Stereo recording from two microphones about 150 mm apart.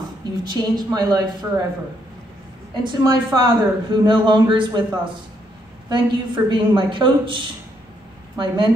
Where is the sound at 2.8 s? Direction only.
30° right (ahead or behind).